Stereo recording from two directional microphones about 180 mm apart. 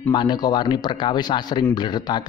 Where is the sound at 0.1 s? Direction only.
25° left (ahead or behind).